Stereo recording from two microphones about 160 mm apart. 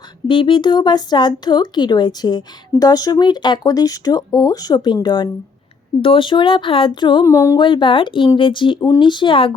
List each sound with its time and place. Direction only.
0.3 s speech: 30° left (ahead or behind)
7.3 s a sound: 20° left (ahead or behind)
7.6 s speech: 30° left (ahead or behind)